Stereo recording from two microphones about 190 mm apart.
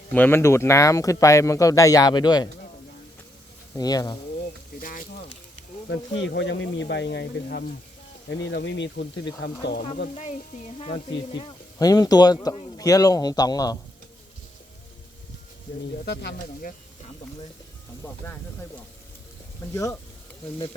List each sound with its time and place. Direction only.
0.1 s speech: 10° left (ahead or behind)
3.8 s speech: 20° left (ahead or behind)
4.8 s a sound: 50° left (ahead or behind)
5.9 s speech: 75° left (ahead or behind)
8.4 s speech: 70° left (ahead or behind)
11.3 s speech: 20° left (ahead or behind)
16.0 s speech: 65° left (ahead or behind)
19.7 s speech: 15° left (ahead or behind)